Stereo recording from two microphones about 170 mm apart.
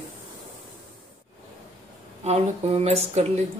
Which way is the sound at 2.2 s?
40° right (ahead or behind).